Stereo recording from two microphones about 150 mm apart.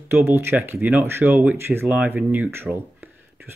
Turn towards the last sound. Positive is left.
turn(degrees=-10)  # may be behind; listen again after turning